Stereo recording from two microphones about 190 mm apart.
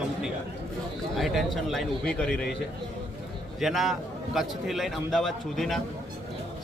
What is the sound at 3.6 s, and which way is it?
A man's voice, centre (ahead or behind).